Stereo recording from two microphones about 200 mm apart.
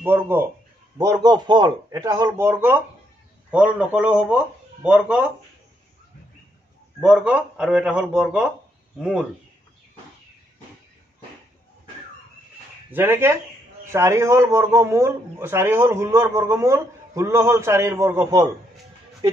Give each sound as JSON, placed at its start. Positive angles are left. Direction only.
{"t": 0.0, "sound": "a man's voice", "side_deg": -10}
{"t": 7.0, "sound": "speech", "side_deg": -5}
{"t": 12.9, "sound": "speech", "side_deg": -10}